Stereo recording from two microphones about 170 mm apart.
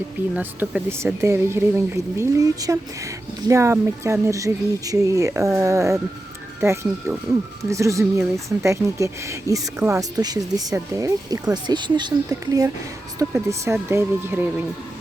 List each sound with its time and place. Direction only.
0.3 s speech: 10° right (ahead or behind)